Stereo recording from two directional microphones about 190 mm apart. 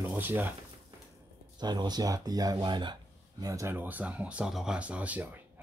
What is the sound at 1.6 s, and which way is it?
Speech, 20° right (ahead or behind).